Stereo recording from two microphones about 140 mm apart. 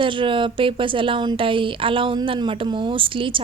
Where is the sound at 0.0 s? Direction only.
35° right (ahead or behind).